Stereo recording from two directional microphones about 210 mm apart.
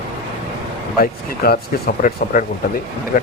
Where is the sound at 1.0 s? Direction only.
45° left (ahead or behind).